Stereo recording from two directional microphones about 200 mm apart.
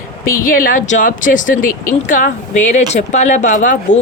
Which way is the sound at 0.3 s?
45° left (ahead or behind).